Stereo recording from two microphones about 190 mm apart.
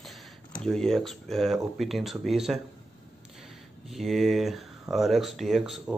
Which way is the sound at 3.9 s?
Centre (ahead or behind).